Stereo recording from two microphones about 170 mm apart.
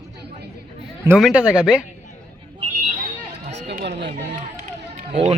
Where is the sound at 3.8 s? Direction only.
85° right.